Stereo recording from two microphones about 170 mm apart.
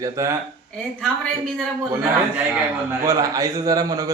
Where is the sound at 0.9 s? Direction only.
5° left (ahead or behind).